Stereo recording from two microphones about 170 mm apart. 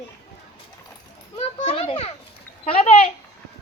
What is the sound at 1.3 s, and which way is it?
Speech, 35° left (ahead or behind).